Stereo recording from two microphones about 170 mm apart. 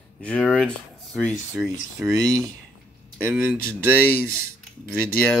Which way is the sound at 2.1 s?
20° right (ahead or behind).